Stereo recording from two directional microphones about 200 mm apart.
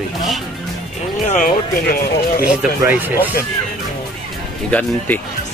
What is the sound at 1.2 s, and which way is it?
Speech, 40° left (ahead or behind).